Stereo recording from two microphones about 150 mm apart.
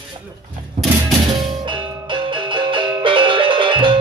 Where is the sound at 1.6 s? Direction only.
35° right (ahead or behind).